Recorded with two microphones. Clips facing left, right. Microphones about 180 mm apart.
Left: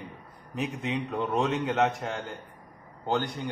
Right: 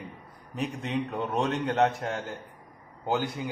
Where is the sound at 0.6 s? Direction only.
Centre (ahead or behind).